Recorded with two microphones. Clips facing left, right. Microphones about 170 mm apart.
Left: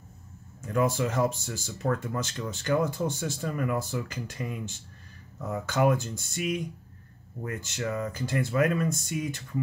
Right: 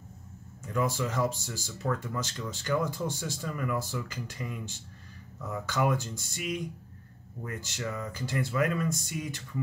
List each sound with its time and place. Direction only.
0.7 s speech: 50° left (ahead or behind)